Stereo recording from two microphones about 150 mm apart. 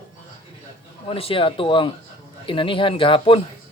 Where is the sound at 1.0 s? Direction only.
40° left (ahead or behind).